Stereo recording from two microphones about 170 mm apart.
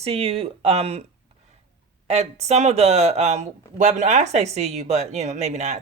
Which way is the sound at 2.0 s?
40° right (ahead or behind).